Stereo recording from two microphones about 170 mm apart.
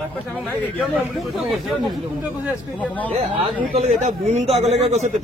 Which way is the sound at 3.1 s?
35° right (ahead or behind).